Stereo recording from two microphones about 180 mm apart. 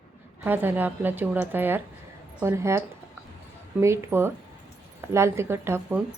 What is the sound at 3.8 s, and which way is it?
Speech, 15° right (ahead or behind).